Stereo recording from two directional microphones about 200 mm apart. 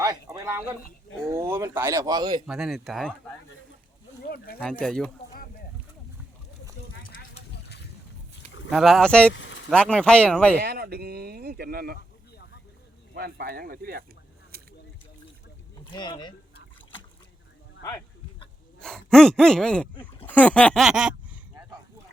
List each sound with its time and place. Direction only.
0.0 s a sound: 15° right (ahead or behind)
1.2 s speech: 15° right (ahead or behind)
2.5 s speech: centre (ahead or behind)
4.2 s a sound: 50° left (ahead or behind)
4.6 s speech: 5° left (ahead or behind)
8.7 s speech: centre (ahead or behind)
9.3 s a sound: 70° left (ahead or behind)
9.6 s speech: 5° left (ahead or behind)
10.6 s speech: 50° right (ahead or behind)
13.1 s speech: 50° right (ahead or behind)
15.9 s speech: 20° left (ahead or behind)
17.8 s a sound: 20° left (ahead or behind)
18.8 s speech: 5° left (ahead or behind)